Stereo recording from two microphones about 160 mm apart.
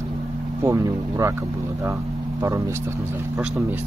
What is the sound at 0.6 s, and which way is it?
Speech, 20° right (ahead or behind).